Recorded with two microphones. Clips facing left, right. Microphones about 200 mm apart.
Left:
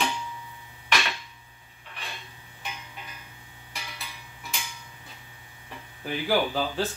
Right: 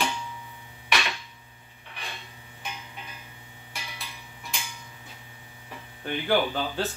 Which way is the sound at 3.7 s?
Centre (ahead or behind).